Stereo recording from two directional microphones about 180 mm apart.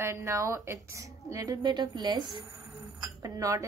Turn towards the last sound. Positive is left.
turn(degrees=-20)  # may be behind; listen again after turning